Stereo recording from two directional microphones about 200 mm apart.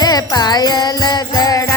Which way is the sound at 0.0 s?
20° left (ahead or behind).